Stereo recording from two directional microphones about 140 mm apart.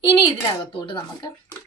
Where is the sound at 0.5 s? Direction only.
30° left (ahead or behind).